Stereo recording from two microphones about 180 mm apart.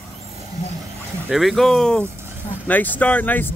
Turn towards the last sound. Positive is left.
turn(degrees=10)  # may be behind; listen again after turning